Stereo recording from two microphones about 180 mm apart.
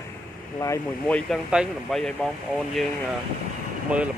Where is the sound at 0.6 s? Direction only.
10° left (ahead or behind).